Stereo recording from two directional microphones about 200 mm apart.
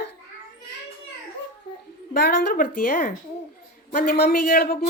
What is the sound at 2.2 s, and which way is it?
A man's voice, 45° left (ahead or behind).